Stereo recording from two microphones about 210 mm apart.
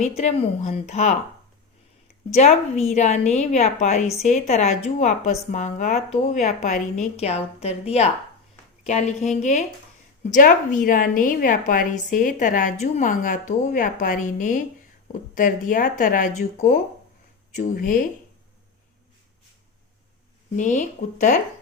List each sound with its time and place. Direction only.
0.0 s a woman's voice: 30° left (ahead or behind)
2.3 s a woman's voice: 30° left (ahead or behind)
20.6 s a woman's voice: 35° left (ahead or behind)